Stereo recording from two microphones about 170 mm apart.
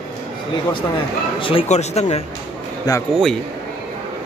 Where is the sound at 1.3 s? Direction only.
30° left (ahead or behind).